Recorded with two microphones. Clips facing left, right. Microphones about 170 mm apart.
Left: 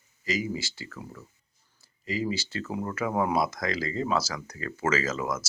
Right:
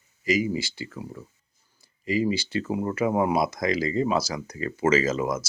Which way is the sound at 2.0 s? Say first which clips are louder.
Right 5 dB; 15° right (ahead or behind).